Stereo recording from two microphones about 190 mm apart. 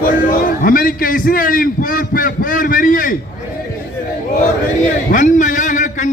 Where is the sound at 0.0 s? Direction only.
50° left (ahead or behind).